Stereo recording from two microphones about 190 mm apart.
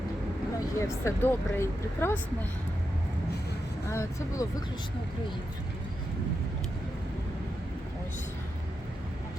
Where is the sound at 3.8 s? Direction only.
15° left (ahead or behind).